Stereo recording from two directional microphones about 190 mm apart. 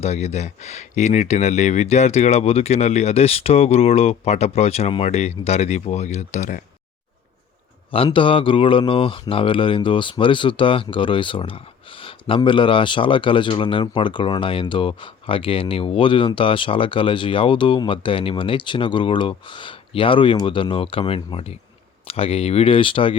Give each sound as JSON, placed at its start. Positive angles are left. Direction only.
{"t": 0.0, "sound": "speech", "side_deg": 35}
{"t": 7.9, "sound": "speech", "side_deg": 30}